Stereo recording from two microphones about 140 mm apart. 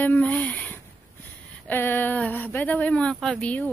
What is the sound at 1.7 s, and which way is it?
Speech, 15° left (ahead or behind).